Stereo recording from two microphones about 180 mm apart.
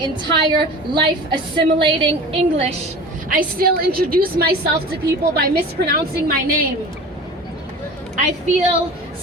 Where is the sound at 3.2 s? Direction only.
50° right (ahead or behind).